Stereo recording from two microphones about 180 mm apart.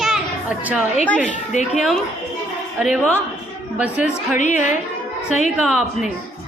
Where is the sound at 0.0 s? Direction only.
5° right (ahead or behind).